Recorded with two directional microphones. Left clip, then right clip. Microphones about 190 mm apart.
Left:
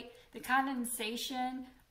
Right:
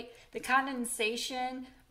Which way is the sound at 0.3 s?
40° right (ahead or behind).